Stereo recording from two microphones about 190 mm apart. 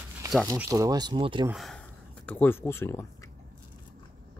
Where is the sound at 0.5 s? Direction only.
15° right (ahead or behind).